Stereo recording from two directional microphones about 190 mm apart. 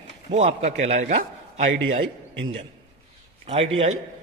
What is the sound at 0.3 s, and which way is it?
Speech, 35° right (ahead or behind).